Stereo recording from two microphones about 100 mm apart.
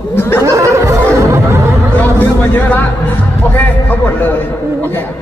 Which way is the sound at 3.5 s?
20° left (ahead or behind).